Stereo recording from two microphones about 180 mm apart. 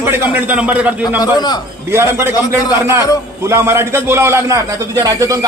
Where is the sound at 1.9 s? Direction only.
15° right (ahead or behind).